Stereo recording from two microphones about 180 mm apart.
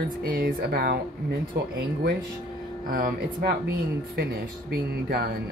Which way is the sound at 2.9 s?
55° right (ahead or behind).